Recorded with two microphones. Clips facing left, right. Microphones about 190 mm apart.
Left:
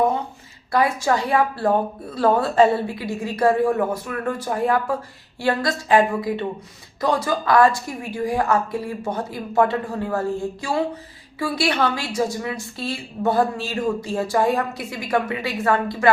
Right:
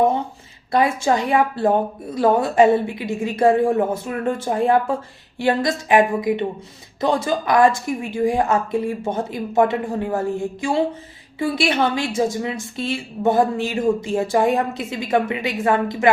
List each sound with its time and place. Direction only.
0.7 s a woman's voice: 20° right (ahead or behind)